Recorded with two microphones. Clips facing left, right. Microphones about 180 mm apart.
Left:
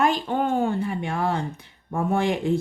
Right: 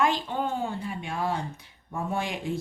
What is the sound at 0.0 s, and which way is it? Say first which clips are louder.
Speech: left 4 dB; 50° left (ahead or behind).